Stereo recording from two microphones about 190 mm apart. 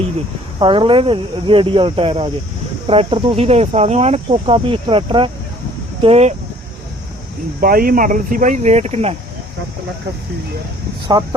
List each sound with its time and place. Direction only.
0.6 s speech: 25° right (ahead or behind)
7.6 s speech: 50° right (ahead or behind)
11.1 s speech: 25° right (ahead or behind)